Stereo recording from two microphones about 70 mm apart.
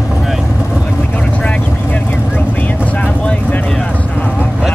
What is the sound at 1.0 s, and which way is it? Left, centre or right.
Vehicle, centre.